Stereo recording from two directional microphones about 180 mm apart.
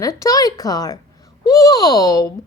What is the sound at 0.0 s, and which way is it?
A woman's voice, 20° left (ahead or behind).